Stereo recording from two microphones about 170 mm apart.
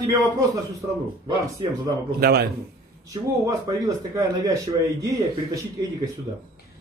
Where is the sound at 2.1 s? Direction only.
65° right (ahead or behind).